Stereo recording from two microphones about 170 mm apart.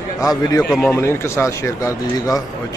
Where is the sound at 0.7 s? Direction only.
15° left (ahead or behind).